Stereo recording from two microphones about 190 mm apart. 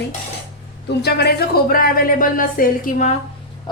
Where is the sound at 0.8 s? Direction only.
60° left (ahead or behind); by 3.1 s 45° left (ahead or behind).